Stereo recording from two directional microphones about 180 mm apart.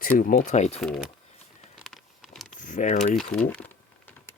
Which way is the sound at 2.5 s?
45° left (ahead or behind).